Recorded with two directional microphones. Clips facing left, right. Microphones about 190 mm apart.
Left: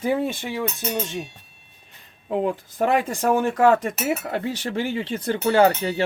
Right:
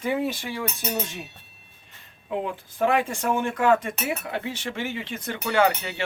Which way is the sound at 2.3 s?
40° left (ahead or behind).